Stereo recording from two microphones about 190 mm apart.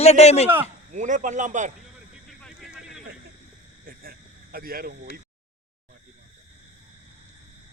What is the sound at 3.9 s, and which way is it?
Cricket, 50° right (ahead or behind).